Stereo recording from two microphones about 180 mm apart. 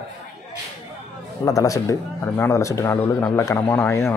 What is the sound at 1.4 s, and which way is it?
Speech, 20° left (ahead or behind).